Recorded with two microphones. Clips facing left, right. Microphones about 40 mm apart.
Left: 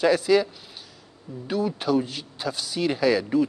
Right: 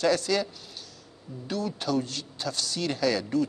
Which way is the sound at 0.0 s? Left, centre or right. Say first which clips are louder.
Left 5 dB; centre.